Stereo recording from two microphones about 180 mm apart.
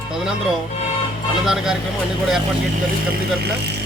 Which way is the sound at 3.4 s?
65° right (ahead or behind).